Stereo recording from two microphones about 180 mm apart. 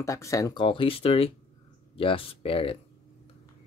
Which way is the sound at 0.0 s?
15° left (ahead or behind).